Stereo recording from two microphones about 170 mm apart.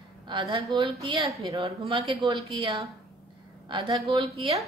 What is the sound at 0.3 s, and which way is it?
A woman's voice, 30° right (ahead or behind).